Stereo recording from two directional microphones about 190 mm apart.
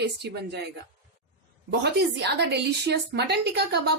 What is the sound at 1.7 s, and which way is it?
A woman's voice, 65° right (ahead or behind).